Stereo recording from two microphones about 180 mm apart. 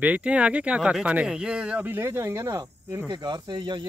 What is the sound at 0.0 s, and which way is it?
Speech, 5° right (ahead or behind).